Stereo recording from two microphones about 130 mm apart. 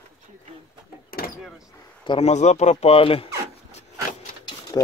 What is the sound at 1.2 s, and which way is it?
Vehicle, 90° left.